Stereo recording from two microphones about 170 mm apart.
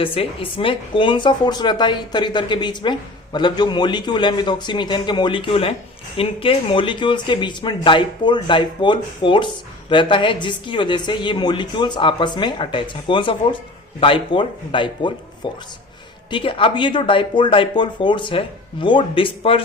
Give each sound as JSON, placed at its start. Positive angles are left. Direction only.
{"t": 0.0, "sound": "speech", "side_deg": 35}